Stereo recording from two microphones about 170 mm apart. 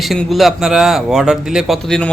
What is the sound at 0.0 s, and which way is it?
A man's voice, centre (ahead or behind).